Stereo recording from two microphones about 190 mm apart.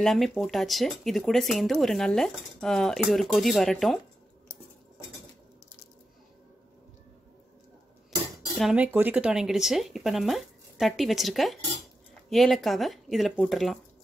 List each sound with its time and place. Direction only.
0.0 s speech: centre (ahead or behind)
8.5 s speech: 5° right (ahead or behind)